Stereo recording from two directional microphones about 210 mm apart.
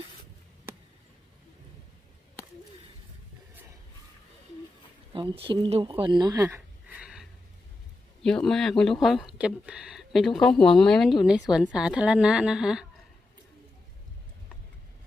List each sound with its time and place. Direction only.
5.1 s speech: 25° right (ahead or behind); by 12.8 s 5° right (ahead or behind)